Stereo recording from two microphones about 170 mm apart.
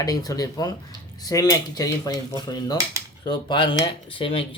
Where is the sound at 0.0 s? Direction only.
20° left (ahead or behind).